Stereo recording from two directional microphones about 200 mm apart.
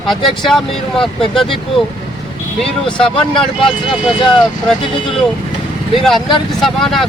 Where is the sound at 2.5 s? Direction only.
Centre (ahead or behind).